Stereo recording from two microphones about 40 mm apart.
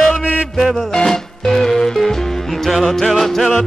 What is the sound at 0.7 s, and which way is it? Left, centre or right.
Music, centre.